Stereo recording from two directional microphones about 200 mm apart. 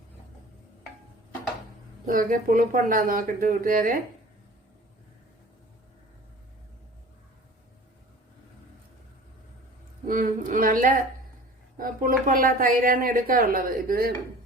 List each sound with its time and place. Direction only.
2.1 s a woman's voice: 45° right (ahead or behind)
10.1 s a woman's voice: 45° right (ahead or behind)